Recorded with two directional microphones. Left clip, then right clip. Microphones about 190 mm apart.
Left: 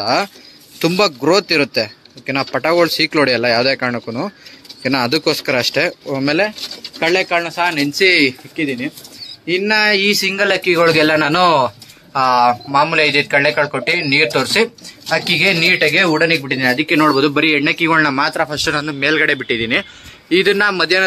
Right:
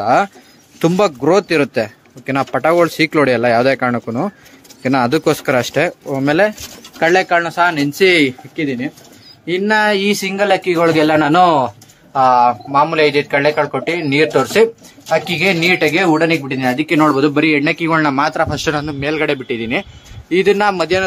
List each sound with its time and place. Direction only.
0.0 s speech: 10° right (ahead or behind)
7.0 s speech: 30° right (ahead or behind)
18.9 s speech: 5° right (ahead or behind)